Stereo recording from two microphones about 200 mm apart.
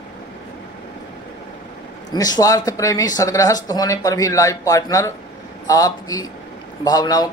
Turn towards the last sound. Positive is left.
turn(degrees=20)  # may be behind; listen again after turning